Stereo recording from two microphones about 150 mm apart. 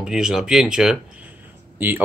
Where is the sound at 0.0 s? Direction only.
5° right (ahead or behind).